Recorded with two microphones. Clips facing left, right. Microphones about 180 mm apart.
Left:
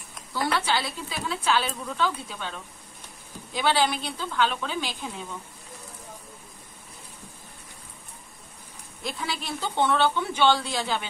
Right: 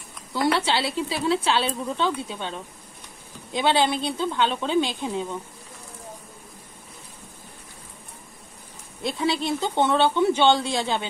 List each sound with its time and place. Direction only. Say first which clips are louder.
0.3 s a woman's voice: right 4 dB; 25° right (ahead or behind)
9.0 s a woman's voice: right 8 dB; 25° right (ahead or behind)